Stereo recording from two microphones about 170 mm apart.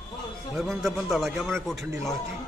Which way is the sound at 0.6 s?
Centre (ahead or behind).